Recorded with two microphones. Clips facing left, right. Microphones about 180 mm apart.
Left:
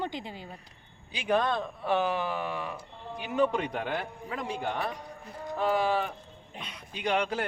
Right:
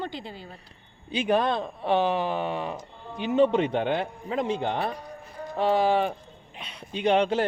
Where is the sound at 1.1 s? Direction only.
20° right (ahead or behind).